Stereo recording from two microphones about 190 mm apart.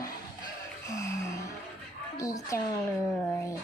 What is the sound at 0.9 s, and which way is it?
Speech, 15° left (ahead or behind).